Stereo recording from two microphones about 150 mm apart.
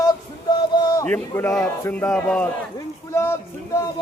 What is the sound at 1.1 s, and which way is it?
Speech, 15° left (ahead or behind).